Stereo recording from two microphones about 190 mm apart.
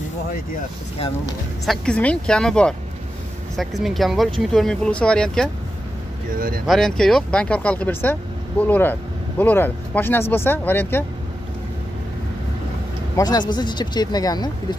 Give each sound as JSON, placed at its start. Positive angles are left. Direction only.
{"t": 1.7, "sound": "speech", "side_deg": 5}
{"t": 6.6, "sound": "speech", "side_deg": 0}
{"t": 13.1, "sound": "speech", "side_deg": 20}